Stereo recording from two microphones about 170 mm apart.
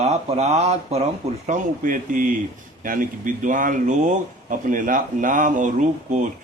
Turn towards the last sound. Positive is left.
turn(degrees=-45)  # may be behind; listen again after turning